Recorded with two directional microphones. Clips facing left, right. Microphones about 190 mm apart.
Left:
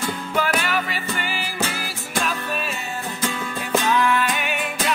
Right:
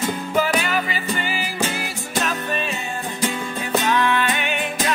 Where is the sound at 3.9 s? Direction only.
5° left (ahead or behind).